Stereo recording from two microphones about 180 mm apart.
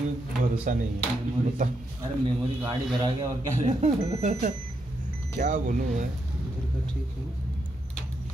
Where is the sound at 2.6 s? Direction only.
20° right (ahead or behind).